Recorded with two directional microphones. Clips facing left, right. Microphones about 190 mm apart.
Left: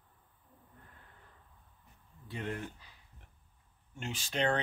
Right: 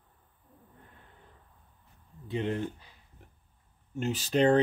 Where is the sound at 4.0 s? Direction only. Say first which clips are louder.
Right 9 dB; 40° right (ahead or behind).